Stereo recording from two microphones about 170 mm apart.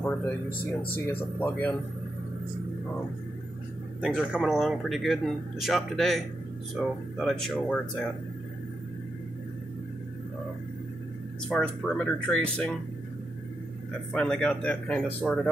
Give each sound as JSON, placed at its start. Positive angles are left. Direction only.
{"t": 0.5, "sound": "speech", "side_deg": 60}
{"t": 1.0, "sound": "speech", "side_deg": 10}
{"t": 4.0, "sound": "speech", "side_deg": -5}
{"t": 11.4, "sound": "speech", "side_deg": 5}
{"t": 14.1, "sound": "speech", "side_deg": 5}